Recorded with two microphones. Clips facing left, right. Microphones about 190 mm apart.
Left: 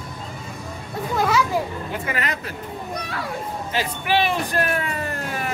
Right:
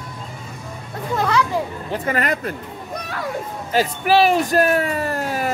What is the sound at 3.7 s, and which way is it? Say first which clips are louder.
Speech: right 6 dB; 40° right (ahead or behind).